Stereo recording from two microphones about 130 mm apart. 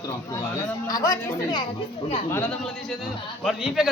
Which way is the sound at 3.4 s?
Centre (ahead or behind).